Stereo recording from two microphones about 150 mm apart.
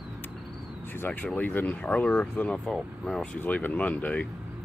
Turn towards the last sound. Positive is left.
turn(degrees=10)  # may be behind; listen again after turning